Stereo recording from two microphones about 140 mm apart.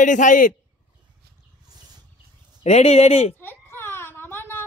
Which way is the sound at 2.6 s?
50° left (ahead or behind).